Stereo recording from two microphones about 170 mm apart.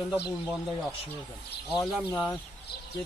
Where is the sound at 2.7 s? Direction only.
70° left (ahead or behind).